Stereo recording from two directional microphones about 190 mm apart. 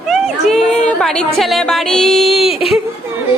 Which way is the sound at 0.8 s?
5° left (ahead or behind).